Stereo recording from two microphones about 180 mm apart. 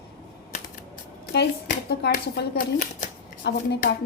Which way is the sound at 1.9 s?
60° left (ahead or behind).